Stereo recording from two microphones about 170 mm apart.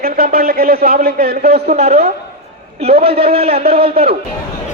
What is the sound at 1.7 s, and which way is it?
A man's voice, 40° right (ahead or behind).